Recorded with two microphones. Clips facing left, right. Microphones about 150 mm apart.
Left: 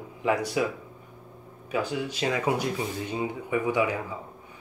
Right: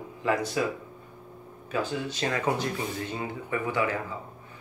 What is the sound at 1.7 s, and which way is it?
Speech, 10° left (ahead or behind).